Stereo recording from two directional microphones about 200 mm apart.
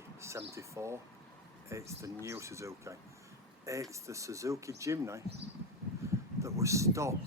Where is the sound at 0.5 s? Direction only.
15° right (ahead or behind).